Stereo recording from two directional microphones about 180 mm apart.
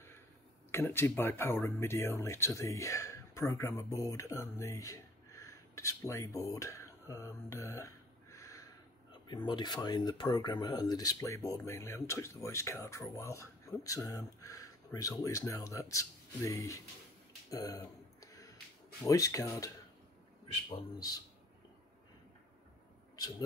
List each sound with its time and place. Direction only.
0.7 s speech: 15° left (ahead or behind)
17.5 s a sound: 20° left (ahead or behind)
19.0 s speech: 20° left (ahead or behind)